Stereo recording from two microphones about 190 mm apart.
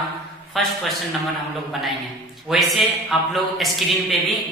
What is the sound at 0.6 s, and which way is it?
Speech, centre (ahead or behind).